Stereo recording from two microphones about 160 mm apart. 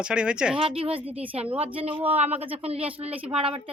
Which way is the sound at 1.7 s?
35° right (ahead or behind).